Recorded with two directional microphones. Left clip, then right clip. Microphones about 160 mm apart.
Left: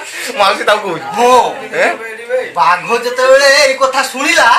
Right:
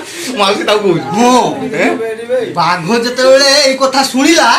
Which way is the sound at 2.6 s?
25° right (ahead or behind).